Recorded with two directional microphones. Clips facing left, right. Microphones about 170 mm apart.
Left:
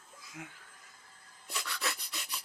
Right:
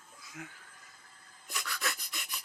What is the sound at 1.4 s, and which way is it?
Rub, 30° left (ahead or behind).